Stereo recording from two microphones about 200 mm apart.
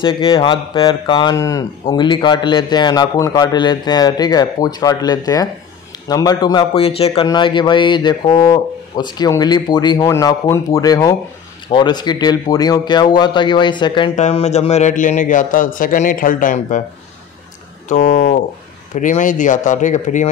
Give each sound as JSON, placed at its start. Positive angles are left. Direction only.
{"t": 0.0, "sound": "speech", "side_deg": 25}
{"t": 14.1, "sound": "a man's voice", "side_deg": 35}
{"t": 17.8, "sound": "a man's voice", "side_deg": 35}